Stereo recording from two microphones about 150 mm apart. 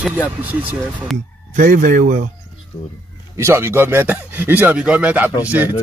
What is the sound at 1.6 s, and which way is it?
Speech, 65° right (ahead or behind).